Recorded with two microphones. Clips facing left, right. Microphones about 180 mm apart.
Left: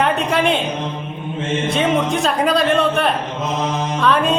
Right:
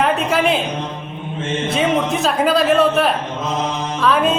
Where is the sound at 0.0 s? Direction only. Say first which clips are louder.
Even; centre (ahead or behind).